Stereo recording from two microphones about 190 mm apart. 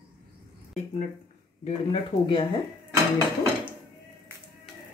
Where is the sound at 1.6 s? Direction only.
30° left (ahead or behind).